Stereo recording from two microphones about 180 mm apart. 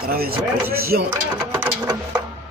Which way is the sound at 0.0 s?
55° right (ahead or behind).